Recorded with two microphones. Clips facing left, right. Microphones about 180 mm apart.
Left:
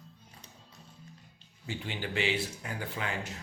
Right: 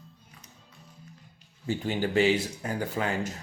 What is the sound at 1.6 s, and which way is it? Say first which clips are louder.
Speech: right 9 dB; 40° right (ahead or behind).